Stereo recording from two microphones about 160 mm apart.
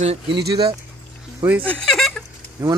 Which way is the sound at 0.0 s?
40° right (ahead or behind).